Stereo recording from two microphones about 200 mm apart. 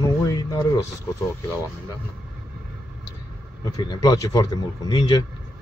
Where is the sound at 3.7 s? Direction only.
20° left (ahead or behind).